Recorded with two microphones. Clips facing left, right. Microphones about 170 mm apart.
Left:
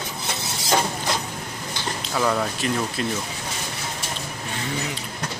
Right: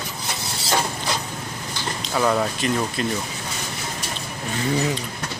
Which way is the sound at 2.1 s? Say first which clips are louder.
Right 2 dB; 5° right (ahead or behind).